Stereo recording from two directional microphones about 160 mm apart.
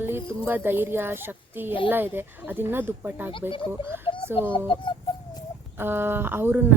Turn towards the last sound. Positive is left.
turn(degrees=-15)  # may be behind; listen again after turning